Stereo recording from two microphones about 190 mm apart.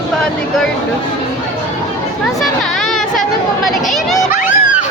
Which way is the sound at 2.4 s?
Centre (ahead or behind).